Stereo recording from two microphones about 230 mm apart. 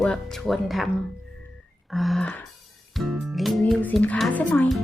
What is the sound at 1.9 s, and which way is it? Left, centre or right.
Speech, centre.